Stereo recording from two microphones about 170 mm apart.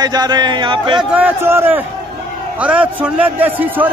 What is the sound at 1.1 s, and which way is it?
A man's voice, 10° right (ahead or behind).